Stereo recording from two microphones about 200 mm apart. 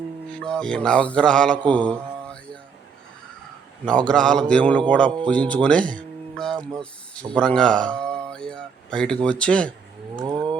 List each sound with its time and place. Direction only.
0.3 s mantra: 5° left (ahead or behind)
3.8 s mantra: 5° left (ahead or behind)
5.5 s speech: 5° left (ahead or behind)
9.2 s mantra: 5° left (ahead or behind)
10.2 s livestock: 20° right (ahead or behind)